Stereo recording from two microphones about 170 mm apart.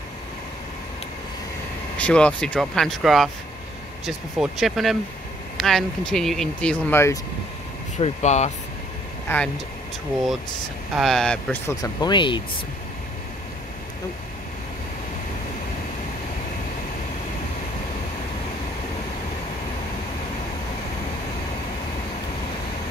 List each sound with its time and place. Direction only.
2.0 s speech: 5° left (ahead or behind)
8.0 s speech: 40° left (ahead or behind)
11.0 s speech: 5° left (ahead or behind)
11.8 s speech: 25° left (ahead or behind)